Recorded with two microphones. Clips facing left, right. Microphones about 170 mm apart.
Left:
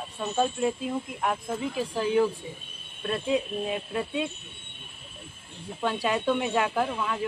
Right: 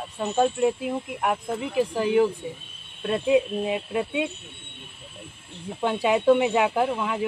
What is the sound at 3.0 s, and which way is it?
Speech, 10° right (ahead or behind).